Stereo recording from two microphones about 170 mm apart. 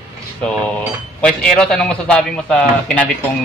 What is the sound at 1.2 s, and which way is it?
Speech, 5° left (ahead or behind).